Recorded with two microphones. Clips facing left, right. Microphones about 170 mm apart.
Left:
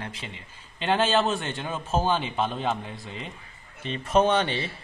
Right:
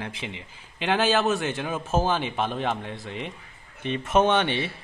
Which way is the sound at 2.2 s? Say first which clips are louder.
Right 1 dB; 75° right (ahead or behind).